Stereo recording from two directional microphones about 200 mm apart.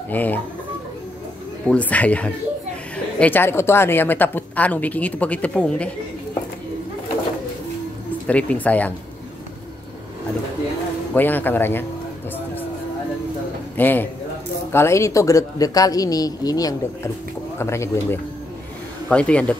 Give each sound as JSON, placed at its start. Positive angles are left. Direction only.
{"t": 0.1, "sound": "speech", "side_deg": 10}
{"t": 1.7, "sound": "speech", "side_deg": 5}
{"t": 8.3, "sound": "speech", "side_deg": 5}
{"t": 11.1, "sound": "speech", "side_deg": 10}
{"t": 13.7, "sound": "a man's voice", "side_deg": 10}